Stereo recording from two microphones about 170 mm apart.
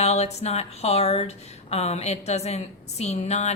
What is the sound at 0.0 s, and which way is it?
A woman's voice, 35° left (ahead or behind).